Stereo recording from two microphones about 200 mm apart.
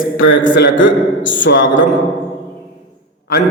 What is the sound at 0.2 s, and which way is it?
Speech, 75° left (ahead or behind).